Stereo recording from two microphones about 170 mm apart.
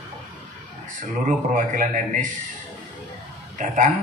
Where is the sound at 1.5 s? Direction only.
45° right (ahead or behind).